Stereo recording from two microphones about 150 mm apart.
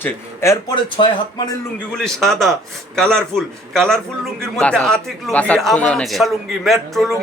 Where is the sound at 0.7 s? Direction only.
35° left (ahead or behind).